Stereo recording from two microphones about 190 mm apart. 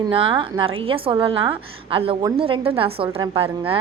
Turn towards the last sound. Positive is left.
turn(degrees=-30)  # may be behind; listen again after turning